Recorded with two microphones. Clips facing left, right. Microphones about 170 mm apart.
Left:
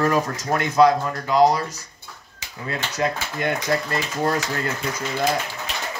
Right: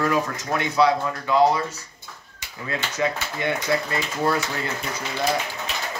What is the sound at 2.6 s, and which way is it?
Speech, 40° left (ahead or behind).